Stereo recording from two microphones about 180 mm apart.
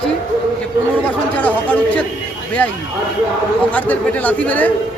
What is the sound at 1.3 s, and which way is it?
Speech, 10° left (ahead or behind).